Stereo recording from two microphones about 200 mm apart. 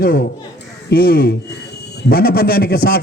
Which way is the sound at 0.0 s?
50° left (ahead or behind).